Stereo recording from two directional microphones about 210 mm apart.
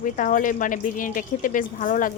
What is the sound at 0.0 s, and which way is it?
A woman's voice, 40° left (ahead or behind).